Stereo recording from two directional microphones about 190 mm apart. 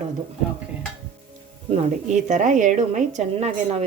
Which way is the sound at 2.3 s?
40° right (ahead or behind).